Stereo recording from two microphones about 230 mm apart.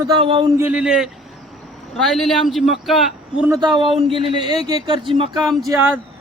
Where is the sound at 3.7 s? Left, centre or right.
Right.